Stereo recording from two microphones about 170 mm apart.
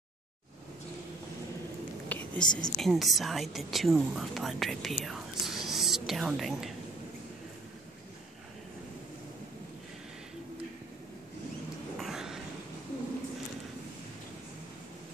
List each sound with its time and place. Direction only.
2.0 s whispering: 10° left (ahead or behind)
2.4 s a woman's voice: 25° left (ahead or behind)
2.8 s a woman's voice: centre (ahead or behind)
12.0 s a sound: centre (ahead or behind)